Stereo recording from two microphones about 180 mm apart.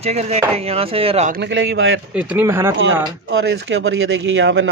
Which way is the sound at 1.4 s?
90° right.